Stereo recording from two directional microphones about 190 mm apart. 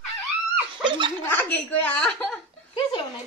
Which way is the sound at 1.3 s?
5° left (ahead or behind).